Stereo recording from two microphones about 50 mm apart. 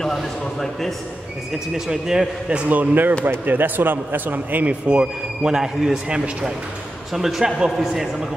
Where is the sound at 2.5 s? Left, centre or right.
Right.